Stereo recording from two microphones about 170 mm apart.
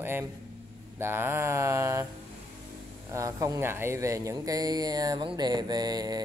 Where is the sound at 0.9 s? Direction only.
15° right (ahead or behind).